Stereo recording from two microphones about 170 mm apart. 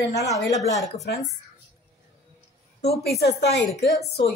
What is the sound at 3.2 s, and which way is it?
Speech, 85° left.